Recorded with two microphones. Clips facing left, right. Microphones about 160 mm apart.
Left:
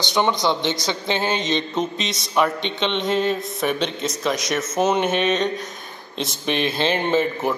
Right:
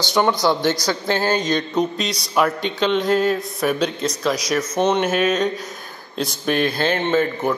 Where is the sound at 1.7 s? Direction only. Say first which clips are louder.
Right 3 dB; centre (ahead or behind).